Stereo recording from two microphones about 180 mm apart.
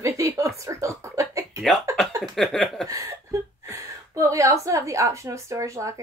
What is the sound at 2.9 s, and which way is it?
A woman's voice, 20° right (ahead or behind).